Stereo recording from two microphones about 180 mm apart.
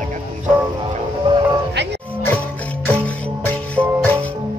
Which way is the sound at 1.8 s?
70° right (ahead or behind).